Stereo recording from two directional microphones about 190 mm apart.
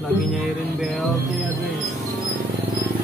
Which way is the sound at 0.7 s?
Centre (ahead or behind).